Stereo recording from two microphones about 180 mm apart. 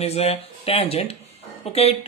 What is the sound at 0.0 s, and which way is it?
Speech, 35° left (ahead or behind).